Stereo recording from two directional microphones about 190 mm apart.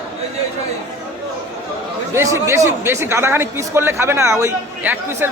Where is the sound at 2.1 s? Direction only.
15° right (ahead or behind).